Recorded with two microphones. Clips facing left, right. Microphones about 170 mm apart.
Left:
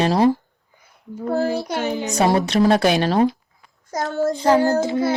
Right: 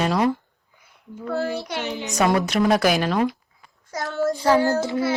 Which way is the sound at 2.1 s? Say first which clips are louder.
Left 2 dB; 30° left (ahead or behind).